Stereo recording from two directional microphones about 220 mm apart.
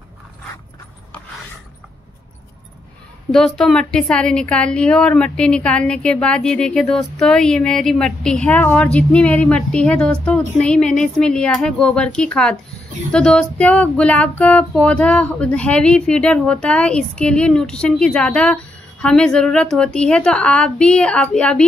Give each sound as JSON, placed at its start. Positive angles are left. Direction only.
{"t": 3.3, "sound": "a woman's voice", "side_deg": 0}